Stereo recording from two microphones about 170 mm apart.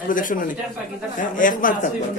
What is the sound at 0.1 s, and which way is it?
A man's voice, 50° left (ahead or behind).